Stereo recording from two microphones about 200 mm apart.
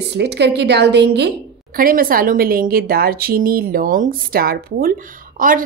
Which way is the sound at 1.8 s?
45° right (ahead or behind).